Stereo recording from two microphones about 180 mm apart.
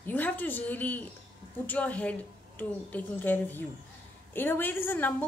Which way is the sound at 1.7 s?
5° left (ahead or behind).